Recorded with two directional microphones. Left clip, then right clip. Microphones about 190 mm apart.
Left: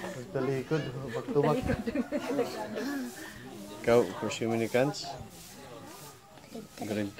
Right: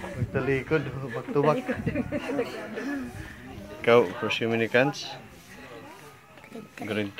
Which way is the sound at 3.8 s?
25° right (ahead or behind).